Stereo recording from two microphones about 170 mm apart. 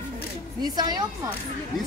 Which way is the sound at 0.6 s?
25° right (ahead or behind).